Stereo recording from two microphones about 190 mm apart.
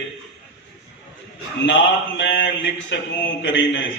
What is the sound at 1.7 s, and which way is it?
Mantra, 70° left (ahead or behind).